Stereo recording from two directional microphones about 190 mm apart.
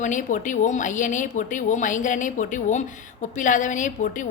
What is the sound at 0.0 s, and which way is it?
A woman's voice, 40° left (ahead or behind).